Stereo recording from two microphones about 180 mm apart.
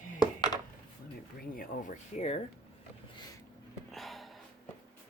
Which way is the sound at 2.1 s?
35° left (ahead or behind).